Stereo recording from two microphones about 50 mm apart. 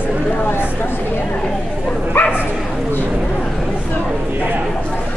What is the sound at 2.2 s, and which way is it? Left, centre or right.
Bow-wow, left.